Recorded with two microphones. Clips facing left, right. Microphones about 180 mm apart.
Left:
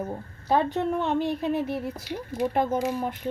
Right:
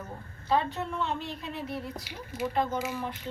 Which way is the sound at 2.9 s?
45° left (ahead or behind).